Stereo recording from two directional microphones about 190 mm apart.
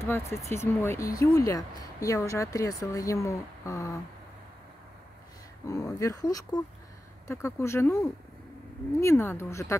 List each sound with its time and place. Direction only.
0.0 s speech: 15° left (ahead or behind)
5.7 s speech: 15° left (ahead or behind)